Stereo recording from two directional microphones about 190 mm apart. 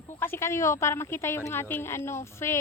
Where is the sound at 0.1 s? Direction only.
10° left (ahead or behind).